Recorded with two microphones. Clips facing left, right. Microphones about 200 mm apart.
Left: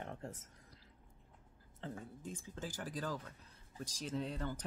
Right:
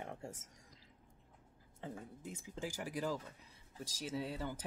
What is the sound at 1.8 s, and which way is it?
Speech, 10° right (ahead or behind).